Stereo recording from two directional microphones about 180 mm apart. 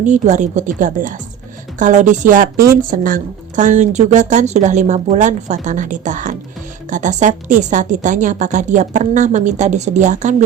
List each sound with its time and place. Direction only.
0.0 s speech: 40° right (ahead or behind)